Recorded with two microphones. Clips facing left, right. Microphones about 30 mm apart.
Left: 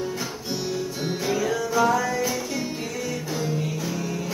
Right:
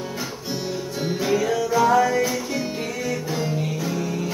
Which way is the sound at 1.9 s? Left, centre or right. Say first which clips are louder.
Right 5 dB; right.